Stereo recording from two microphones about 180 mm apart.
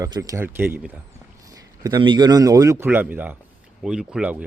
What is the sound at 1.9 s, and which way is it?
Speech, 25° right (ahead or behind).